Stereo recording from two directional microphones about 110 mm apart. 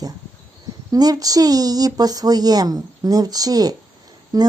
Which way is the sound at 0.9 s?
35° right (ahead or behind).